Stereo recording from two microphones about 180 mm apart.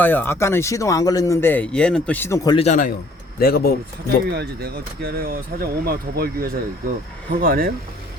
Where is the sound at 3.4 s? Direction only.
55° left (ahead or behind).